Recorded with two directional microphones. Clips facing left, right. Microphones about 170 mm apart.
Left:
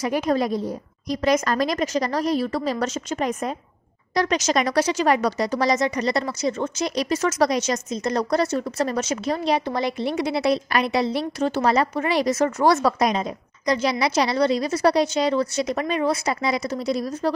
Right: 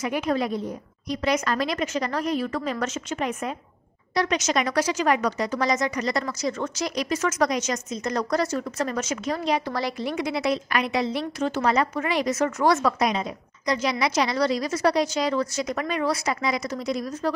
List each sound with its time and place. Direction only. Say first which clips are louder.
0.0 s speech: left 3 dB; 40° left (ahead or behind)